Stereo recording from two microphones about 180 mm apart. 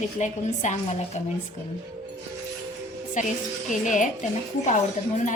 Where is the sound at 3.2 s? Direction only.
45° left (ahead or behind).